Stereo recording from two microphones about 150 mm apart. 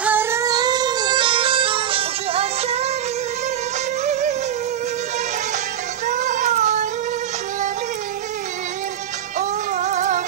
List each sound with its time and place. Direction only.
0.0 s music: 15° right (ahead or behind); by 2.9 s 45° right (ahead or behind)
4.0 s music: 50° right (ahead or behind)
6.0 s child singing: 55° right (ahead or behind)
9.4 s music: 55° right (ahead or behind)